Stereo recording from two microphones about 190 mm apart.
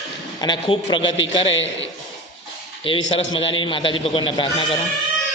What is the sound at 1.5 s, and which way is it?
Speech, 80° left.